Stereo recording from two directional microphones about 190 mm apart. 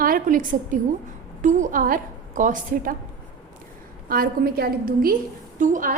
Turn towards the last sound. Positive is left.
turn(degrees=-45)  # may be behind; listen again after turning